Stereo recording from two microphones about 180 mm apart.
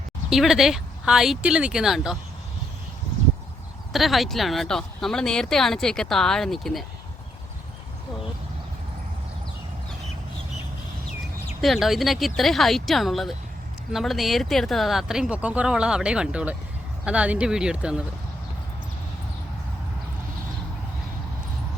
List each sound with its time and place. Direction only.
0.3 s speech: centre (ahead or behind)
3.9 s speech: centre (ahead or behind)
11.6 s speech: centre (ahead or behind)